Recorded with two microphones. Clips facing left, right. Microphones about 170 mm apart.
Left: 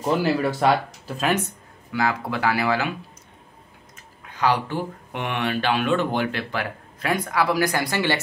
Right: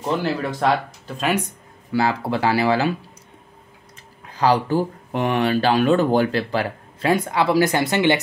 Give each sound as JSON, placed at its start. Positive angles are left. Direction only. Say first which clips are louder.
{"t": 0.0, "sound": "speech", "louder": "left 2 dB", "side_deg": 5}
{"t": 1.9, "sound": "speech", "louder": "right 4 dB", "side_deg": -30}
{"t": 4.3, "sound": "speech", "louder": "right 4 dB", "side_deg": -35}